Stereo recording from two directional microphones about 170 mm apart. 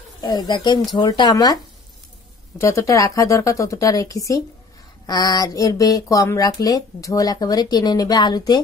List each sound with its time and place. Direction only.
0.2 s speech: 25° left (ahead or behind)
2.6 s speech: 20° left (ahead or behind)